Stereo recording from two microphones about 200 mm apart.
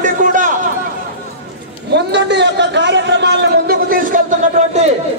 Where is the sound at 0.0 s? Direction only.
40° right (ahead or behind).